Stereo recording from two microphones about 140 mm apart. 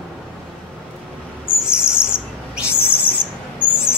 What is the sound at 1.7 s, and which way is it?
Owl, 5° right (ahead or behind).